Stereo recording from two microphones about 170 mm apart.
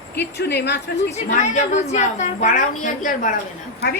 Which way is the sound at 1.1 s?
40° left (ahead or behind).